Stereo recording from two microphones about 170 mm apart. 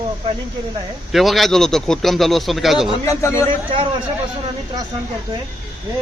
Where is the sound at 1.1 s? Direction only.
Centre (ahead or behind).